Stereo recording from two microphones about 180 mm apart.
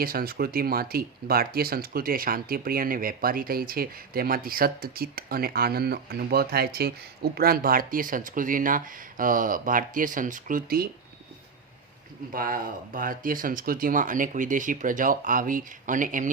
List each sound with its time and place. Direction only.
0.0 s speech: 55° right (ahead or behind)
12.3 s speech: 50° right (ahead or behind)